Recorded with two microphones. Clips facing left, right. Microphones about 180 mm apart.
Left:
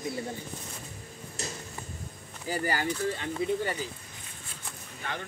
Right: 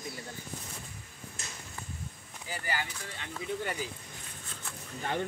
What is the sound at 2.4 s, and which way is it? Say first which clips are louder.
Speech: left 7 dB; 40° left (ahead or behind).